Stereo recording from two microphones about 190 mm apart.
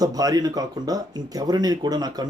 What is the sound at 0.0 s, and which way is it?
Speech, 20° right (ahead or behind).